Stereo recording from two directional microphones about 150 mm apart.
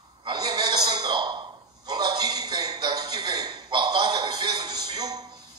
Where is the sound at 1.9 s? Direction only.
30° right (ahead or behind).